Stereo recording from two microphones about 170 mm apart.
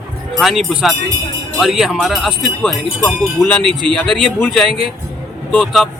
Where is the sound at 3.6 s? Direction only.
30° right (ahead or behind).